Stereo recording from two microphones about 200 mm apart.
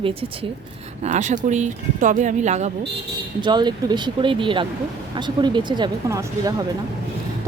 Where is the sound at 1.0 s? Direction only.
35° right (ahead or behind).